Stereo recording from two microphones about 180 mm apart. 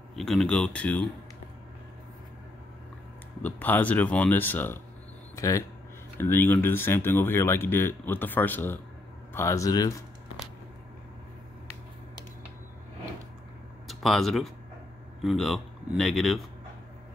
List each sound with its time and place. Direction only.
0.1 s speech: centre (ahead or behind)
3.4 s speech: 10° left (ahead or behind)
13.8 s speech: centre (ahead or behind)